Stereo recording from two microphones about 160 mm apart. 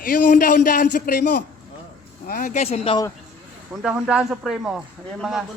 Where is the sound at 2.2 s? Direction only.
60° left (ahead or behind); by 3.0 s 35° left (ahead or behind).